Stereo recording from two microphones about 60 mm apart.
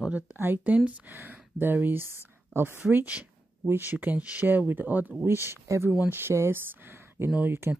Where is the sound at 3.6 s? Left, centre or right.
Right.